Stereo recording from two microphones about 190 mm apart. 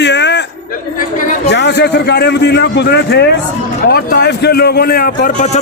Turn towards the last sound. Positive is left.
turn(degrees=50)  # may be behind; listen again after turning